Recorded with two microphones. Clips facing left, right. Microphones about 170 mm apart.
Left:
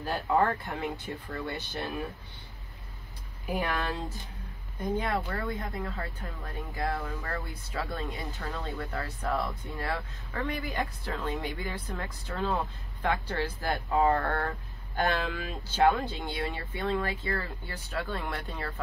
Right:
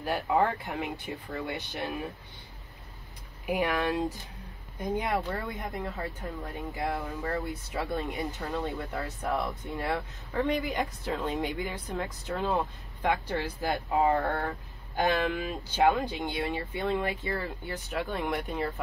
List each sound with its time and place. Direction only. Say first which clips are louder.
0.0 s speech: even; 15° right (ahead or behind)
3.4 s speech: right 3 dB; 15° right (ahead or behind)